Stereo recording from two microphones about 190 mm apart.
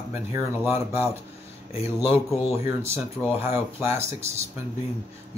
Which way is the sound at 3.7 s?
15° right (ahead or behind).